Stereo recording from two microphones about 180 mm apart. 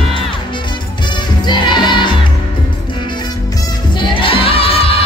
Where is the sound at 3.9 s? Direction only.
30° left (ahead or behind).